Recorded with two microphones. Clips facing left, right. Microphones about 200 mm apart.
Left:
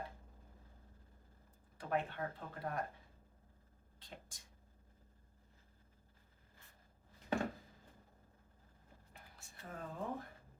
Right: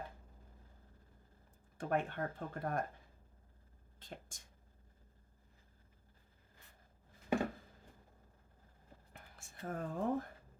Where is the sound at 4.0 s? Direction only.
45° right (ahead or behind).